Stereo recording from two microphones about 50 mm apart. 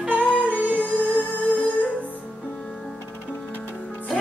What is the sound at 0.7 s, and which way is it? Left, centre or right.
Music, left.